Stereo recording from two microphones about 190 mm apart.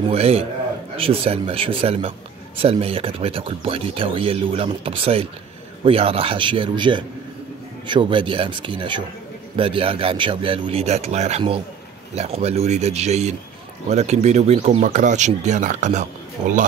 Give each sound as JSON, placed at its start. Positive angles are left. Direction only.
{"t": 0.1, "sound": "a man's voice", "side_deg": -30}